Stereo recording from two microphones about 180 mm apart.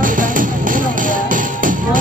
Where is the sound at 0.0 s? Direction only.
50° right (ahead or behind).